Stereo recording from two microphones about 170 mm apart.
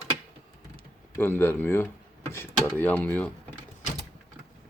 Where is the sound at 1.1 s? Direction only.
15° left (ahead or behind).